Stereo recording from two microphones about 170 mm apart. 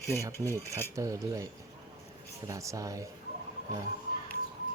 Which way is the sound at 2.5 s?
20° right (ahead or behind).